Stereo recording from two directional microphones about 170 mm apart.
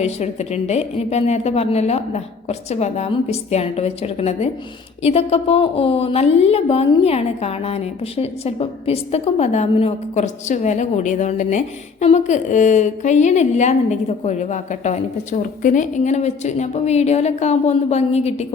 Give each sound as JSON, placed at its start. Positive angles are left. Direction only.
{"t": 0.0, "sound": "speech", "side_deg": 40}